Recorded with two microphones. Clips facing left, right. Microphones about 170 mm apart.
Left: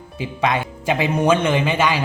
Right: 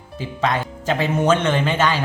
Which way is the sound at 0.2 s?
15° left (ahead or behind).